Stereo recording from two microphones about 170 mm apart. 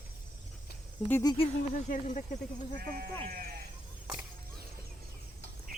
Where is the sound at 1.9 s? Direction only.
45° left (ahead or behind).